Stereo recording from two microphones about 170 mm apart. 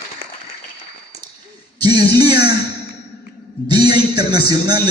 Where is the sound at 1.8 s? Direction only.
25° right (ahead or behind).